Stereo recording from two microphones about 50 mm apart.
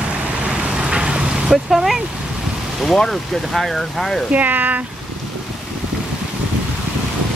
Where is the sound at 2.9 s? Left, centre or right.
Centre.